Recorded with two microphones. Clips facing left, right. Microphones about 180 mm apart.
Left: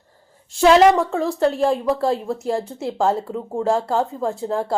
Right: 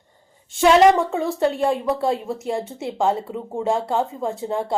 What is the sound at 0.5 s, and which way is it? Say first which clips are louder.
Speech: left 1 dB; centre (ahead or behind).